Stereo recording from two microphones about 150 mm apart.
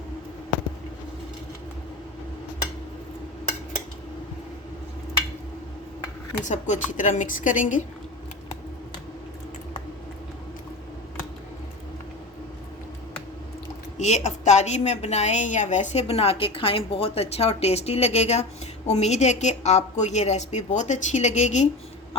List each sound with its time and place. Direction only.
6.4 s a woman's voice: 55° left (ahead or behind)
14.0 s a woman's voice: 50° left (ahead or behind)